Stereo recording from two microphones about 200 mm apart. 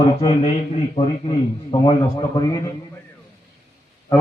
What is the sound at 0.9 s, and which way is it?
A man's voice, 25° left (ahead or behind).